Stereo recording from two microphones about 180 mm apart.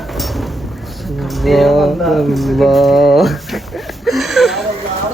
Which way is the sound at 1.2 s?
Centre (ahead or behind).